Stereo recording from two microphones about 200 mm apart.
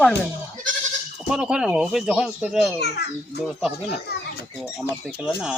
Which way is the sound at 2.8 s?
55° left (ahead or behind).